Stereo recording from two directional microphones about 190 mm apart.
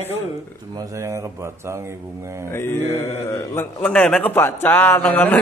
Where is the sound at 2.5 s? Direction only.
10° left (ahead or behind).